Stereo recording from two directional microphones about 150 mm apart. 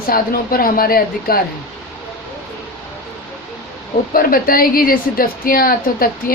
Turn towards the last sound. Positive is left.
turn(degrees=75)  # may be behind; listen again after turning